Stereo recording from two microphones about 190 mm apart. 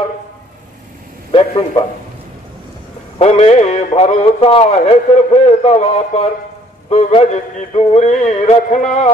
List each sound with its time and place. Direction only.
1.3 s a man's voice: 30° left (ahead or behind)
3.2 s a man's voice: 35° left (ahead or behind)